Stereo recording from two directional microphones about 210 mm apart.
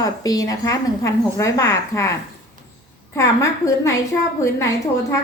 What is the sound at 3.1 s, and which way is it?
A woman's voice, 15° left (ahead or behind).